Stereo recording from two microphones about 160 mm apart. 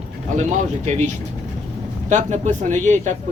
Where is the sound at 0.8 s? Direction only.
45° right (ahead or behind).